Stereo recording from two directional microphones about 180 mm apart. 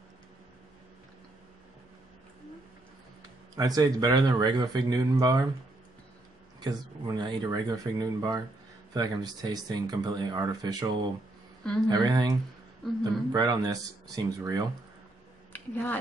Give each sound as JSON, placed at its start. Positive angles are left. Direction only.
{"t": 3.5, "sound": "speech", "side_deg": -20}
{"t": 6.6, "sound": "speech", "side_deg": -20}
{"t": 11.9, "sound": "speech", "side_deg": -20}
{"t": 15.5, "sound": "speech", "side_deg": 10}